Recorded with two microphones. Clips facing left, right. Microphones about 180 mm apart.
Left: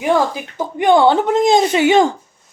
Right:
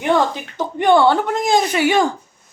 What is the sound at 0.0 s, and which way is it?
Speech, 5° left (ahead or behind).